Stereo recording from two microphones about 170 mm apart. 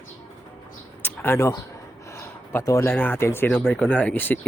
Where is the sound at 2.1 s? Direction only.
15° left (ahead or behind).